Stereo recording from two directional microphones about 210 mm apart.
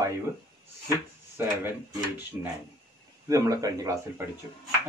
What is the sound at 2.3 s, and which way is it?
Speech, 10° right (ahead or behind).